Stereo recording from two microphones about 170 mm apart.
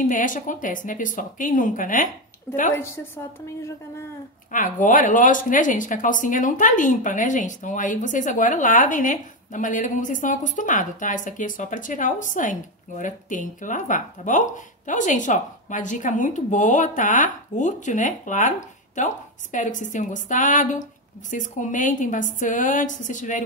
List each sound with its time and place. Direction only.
0.1 s speech: 50° left (ahead or behind)
3.4 s a woman's voice: 15° left (ahead or behind)
4.5 s speech: 50° left (ahead or behind)